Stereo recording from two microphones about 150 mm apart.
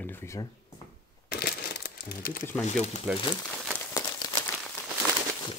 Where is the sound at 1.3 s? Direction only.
90° left.